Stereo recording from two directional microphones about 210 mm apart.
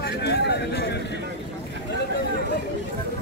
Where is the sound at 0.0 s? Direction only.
50° left (ahead or behind).